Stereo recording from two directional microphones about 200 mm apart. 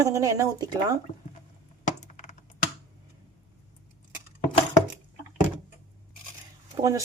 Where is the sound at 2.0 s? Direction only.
35° left (ahead or behind).